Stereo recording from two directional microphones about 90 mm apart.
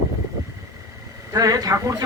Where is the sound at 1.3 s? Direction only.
45° right (ahead or behind).